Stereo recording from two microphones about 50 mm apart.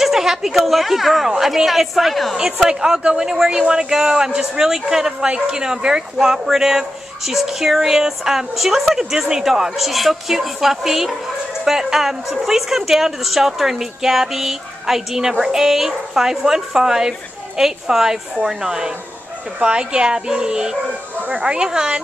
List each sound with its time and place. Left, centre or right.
0.0 s a woman's voice: centre
2.3 s a woman's voice: centre